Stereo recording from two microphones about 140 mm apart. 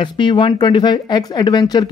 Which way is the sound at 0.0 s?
35° left (ahead or behind).